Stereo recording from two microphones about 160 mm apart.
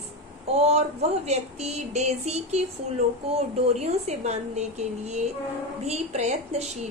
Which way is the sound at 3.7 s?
45° right (ahead or behind).